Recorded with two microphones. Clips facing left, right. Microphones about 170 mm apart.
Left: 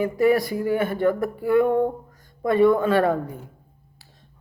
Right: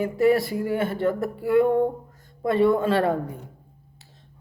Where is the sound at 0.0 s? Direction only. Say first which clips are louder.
Left 1 dB; 25° right (ahead or behind).